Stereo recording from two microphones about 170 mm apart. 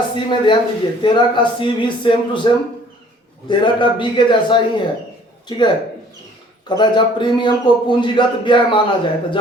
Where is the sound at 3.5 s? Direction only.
30° left (ahead or behind).